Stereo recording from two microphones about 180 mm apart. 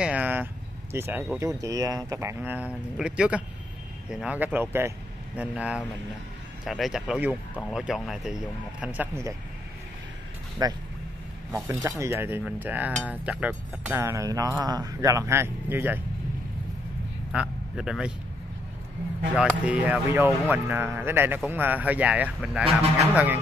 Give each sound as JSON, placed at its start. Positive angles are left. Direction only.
{"t": 0.0, "sound": "vehicle", "side_deg": -10}
{"t": 0.9, "sound": "speech", "side_deg": -10}
{"t": 10.6, "sound": "speech", "side_deg": -20}
{"t": 17.3, "sound": "speech", "side_deg": -5}
{"t": 19.6, "sound": "speech", "side_deg": -10}